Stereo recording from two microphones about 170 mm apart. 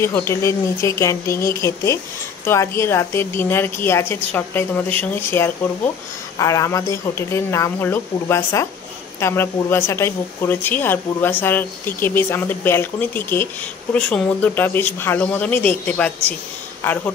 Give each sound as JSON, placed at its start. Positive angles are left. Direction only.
{"t": 0.0, "sound": "speech", "side_deg": 15}